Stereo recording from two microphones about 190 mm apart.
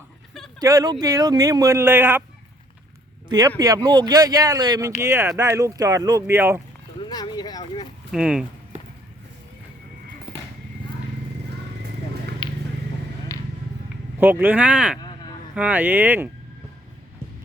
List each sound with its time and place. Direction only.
0.6 s speech: 20° right (ahead or behind)
3.2 s speech: 20° right (ahead or behind)
7.0 s a sound: 20° left (ahead or behind)
8.1 s speech: 5° right (ahead or behind)
10.3 s a sound: 5° right (ahead or behind)
12.4 s vehicle: 25° left (ahead or behind)
14.2 s speech: 10° right (ahead or behind)